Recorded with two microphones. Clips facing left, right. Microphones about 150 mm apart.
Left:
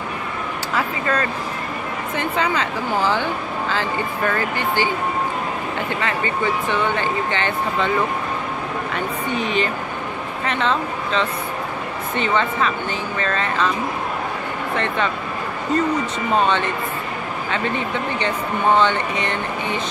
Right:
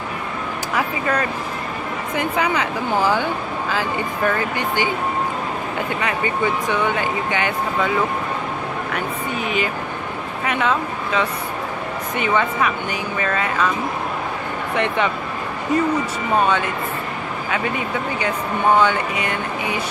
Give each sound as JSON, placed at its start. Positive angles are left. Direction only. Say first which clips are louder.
{"t": 0.7, "sound": "speech", "louder": "even", "side_deg": -10}
{"t": 4.3, "sound": "speech", "louder": "even", "side_deg": -15}
{"t": 5.9, "sound": "speech", "louder": "right 2 dB", "side_deg": -15}
{"t": 8.9, "sound": "speech", "louder": "left 3 dB", "side_deg": -10}
{"t": 15.7, "sound": "speech", "louder": "right 1 dB", "side_deg": -10}